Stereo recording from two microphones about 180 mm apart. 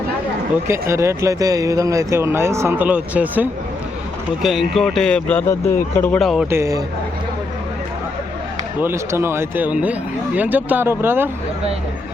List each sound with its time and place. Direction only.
0.7 s speech: 15° right (ahead or behind); by 6.4 s centre (ahead or behind)
6.5 s speech: 15° right (ahead or behind)
8.8 s speech: 15° right (ahead or behind)